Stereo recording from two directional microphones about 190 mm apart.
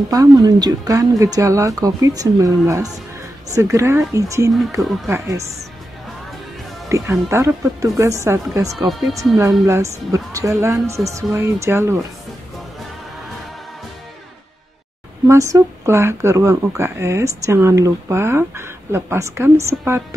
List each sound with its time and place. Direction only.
0.1 s speech: 20° right (ahead or behind)
6.9 s speech: 15° right (ahead or behind)
8.7 s speech: centre (ahead or behind)
9.4 s speech: 15° right (ahead or behind)
15.2 s speech: 15° right (ahead or behind)